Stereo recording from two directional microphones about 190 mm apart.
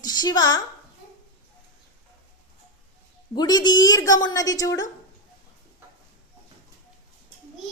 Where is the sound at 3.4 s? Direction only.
20° left (ahead or behind).